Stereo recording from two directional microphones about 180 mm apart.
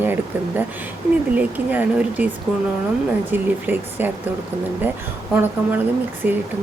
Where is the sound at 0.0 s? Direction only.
10° right (ahead or behind).